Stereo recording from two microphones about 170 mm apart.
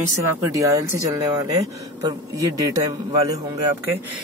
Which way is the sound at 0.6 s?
20° right (ahead or behind).